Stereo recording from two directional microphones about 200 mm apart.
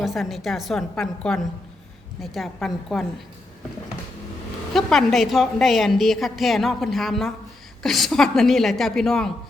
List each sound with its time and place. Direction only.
0.0 s a woman's voice: centre (ahead or behind)
4.7 s a woman's voice: centre (ahead or behind)